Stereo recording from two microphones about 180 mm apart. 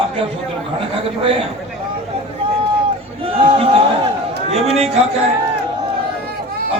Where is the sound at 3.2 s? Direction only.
30° right (ahead or behind).